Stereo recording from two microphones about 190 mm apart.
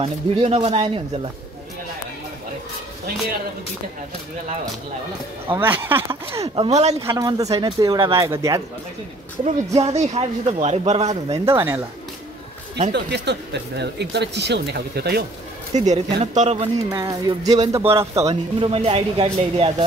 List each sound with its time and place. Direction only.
0.0 s speech: 30° right (ahead or behind)
5.5 s speech: 10° right (ahead or behind)
6.5 s speech: 30° right (ahead or behind)
7.1 s speech: 15° right (ahead or behind)
9.8 s speech: 35° right (ahead or behind)
11.3 s speech: 15° right (ahead or behind)
12.9 s speech: 65° right (ahead or behind)
15.7 s speech: 40° right (ahead or behind)
16.9 s speech: 15° right (ahead or behind)
18.2 s speech: 30° right (ahead or behind)